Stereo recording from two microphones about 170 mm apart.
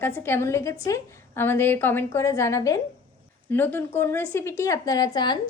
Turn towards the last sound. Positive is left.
turn(degrees=25)  # may be behind; listen again after turning